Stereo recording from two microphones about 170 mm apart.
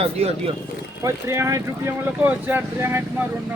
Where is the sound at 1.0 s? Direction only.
15° right (ahead or behind).